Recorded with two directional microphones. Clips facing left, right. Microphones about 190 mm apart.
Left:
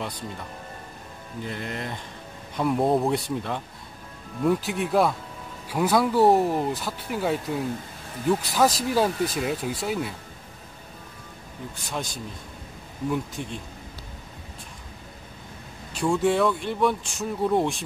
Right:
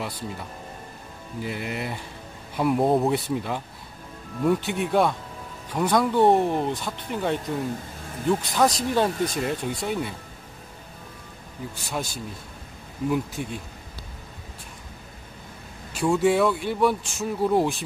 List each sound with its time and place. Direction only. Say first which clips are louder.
0.0 s speech: right 1 dB; 5° right (ahead or behind)
11.9 s speech: right 1 dB; 5° right (ahead or behind)
13.4 s speech: right 2 dB; 10° right (ahead or behind)
15.9 s speech: right 2 dB; 5° right (ahead or behind)